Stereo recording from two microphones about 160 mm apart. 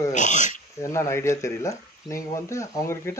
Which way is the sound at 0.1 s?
50° left (ahead or behind).